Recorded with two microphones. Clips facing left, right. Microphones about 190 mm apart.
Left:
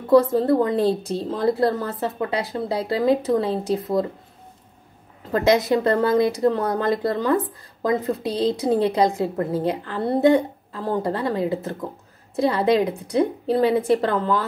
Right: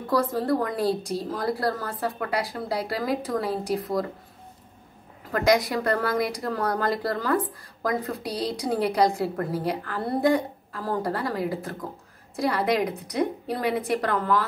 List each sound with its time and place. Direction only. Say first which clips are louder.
0.1 s speech: left 8 dB; 25° left (ahead or behind)
5.3 s speech: left 4 dB; 25° left (ahead or behind)